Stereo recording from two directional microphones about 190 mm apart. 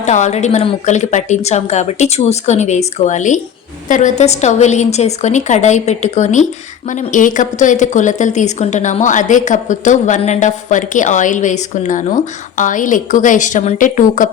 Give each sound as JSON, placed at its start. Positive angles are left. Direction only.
{"t": 0.0, "sound": "a woman's voice", "side_deg": 40}